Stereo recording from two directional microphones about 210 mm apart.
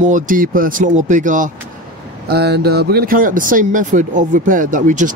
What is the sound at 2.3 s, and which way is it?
Speech, 50° right (ahead or behind).